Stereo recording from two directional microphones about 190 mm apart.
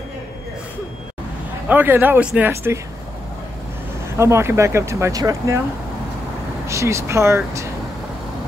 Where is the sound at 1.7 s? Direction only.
10° right (ahead or behind).